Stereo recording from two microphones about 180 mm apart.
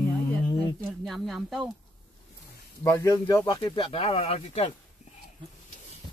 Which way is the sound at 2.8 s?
20° left (ahead or behind).